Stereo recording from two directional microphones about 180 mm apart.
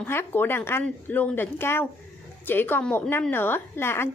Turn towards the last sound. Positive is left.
turn(degrees=15)  # may be behind; listen again after turning